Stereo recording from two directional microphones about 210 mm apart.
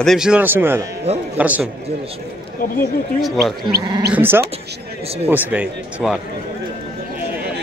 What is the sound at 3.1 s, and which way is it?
Speech, centre (ahead or behind).